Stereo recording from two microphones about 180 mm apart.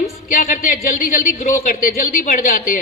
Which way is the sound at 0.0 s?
45° left (ahead or behind).